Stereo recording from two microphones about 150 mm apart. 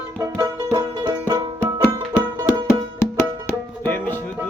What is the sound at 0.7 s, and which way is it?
Music, 25° right (ahead or behind).